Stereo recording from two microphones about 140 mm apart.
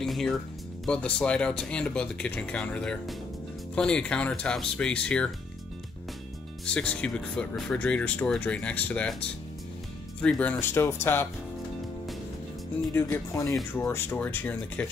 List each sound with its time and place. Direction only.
0.0 s music: centre (ahead or behind)
0.8 s speech: 10° left (ahead or behind)
6.6 s speech: 10° left (ahead or behind)
10.2 s speech: 10° left (ahead or behind)
12.9 s speech: 15° left (ahead or behind)